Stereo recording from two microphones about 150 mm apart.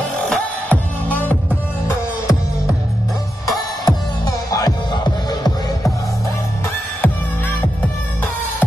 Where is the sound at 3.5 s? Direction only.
25° left (ahead or behind).